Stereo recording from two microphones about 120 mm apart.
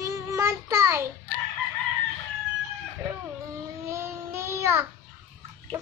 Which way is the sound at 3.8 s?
20° right (ahead or behind).